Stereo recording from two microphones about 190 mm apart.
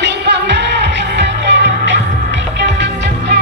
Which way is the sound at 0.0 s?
65° right (ahead or behind).